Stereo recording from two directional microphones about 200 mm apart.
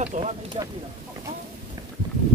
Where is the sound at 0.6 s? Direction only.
25° right (ahead or behind).